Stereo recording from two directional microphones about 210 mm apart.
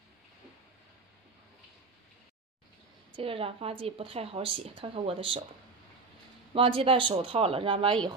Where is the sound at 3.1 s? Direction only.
25° right (ahead or behind).